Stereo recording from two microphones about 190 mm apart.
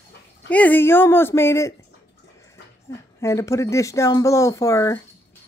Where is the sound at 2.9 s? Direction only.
15° left (ahead or behind).